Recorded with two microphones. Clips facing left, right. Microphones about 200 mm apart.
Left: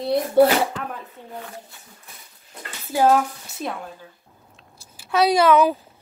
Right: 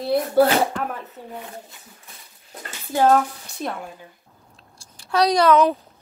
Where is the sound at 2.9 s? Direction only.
10° left (ahead or behind).